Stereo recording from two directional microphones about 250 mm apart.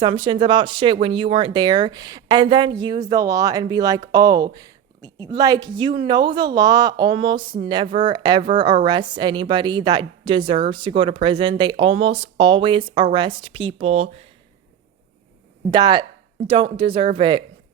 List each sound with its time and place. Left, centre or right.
0.0 s a woman's voice: centre
15.7 s a woman's voice: centre